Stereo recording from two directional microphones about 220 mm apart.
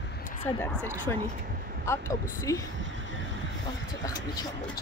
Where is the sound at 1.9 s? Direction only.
15° left (ahead or behind).